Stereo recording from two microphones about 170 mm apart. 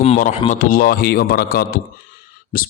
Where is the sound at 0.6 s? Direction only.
55° left (ahead or behind).